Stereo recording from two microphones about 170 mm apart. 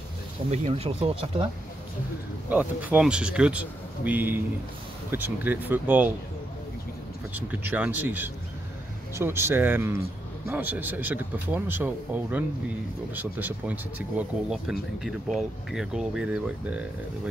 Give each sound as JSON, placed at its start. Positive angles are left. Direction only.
{"t": 0.5, "sound": "speech", "side_deg": -35}
{"t": 2.5, "sound": "speech", "side_deg": -10}
{"t": 7.3, "sound": "speech", "side_deg": -10}